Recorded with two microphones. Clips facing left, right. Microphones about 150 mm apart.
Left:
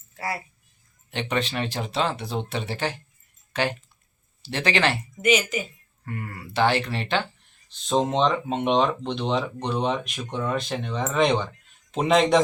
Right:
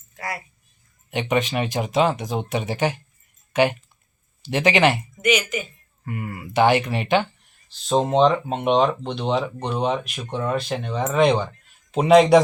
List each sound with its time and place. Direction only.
0.2 s speech: 30° left (ahead or behind)
1.1 s speech: 15° right (ahead or behind)
5.1 s a woman's voice: 30° left (ahead or behind)
6.1 s speech: 15° right (ahead or behind)
7.9 s speech: centre (ahead or behind)